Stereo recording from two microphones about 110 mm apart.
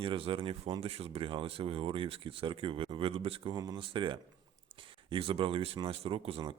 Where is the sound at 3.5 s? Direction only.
35° right (ahead or behind).